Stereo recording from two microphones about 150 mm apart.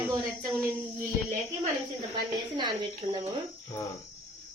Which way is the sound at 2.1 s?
30° right (ahead or behind).